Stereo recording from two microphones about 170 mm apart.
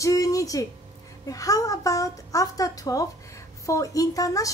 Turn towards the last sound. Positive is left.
turn(degrees=20)  # may be behind; listen again after turning